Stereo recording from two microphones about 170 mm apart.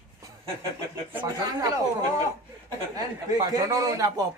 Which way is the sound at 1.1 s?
20° right (ahead or behind).